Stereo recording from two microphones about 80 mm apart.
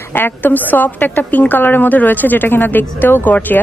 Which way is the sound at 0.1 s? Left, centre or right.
Left.